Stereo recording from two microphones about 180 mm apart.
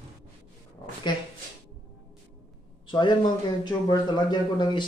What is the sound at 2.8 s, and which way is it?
A man's voice, 25° left (ahead or behind).